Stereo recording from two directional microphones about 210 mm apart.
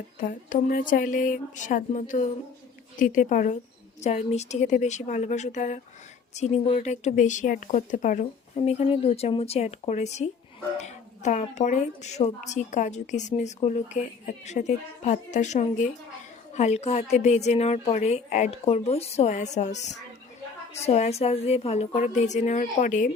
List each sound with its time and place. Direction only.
0.2 s a woman's voice: 40° left (ahead or behind)